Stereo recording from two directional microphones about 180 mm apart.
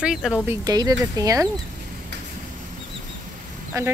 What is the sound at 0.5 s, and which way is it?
Speech, 20° right (ahead or behind).